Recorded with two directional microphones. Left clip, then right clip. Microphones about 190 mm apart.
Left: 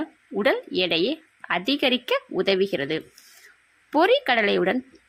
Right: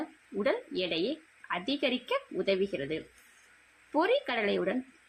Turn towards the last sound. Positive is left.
turn(degrees=50)  # may be behind; listen again after turning